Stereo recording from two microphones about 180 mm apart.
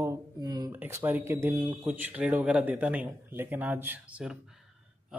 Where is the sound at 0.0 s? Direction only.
15° right (ahead or behind).